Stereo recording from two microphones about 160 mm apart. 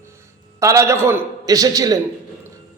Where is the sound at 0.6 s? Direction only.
20° right (ahead or behind).